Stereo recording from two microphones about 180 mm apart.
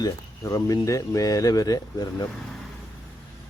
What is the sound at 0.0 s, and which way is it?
Speech, 20° left (ahead or behind).